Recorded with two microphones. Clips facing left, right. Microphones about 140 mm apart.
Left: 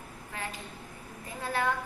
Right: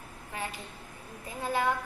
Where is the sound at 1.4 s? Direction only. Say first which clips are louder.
Right 1 dB; 15° right (ahead or behind).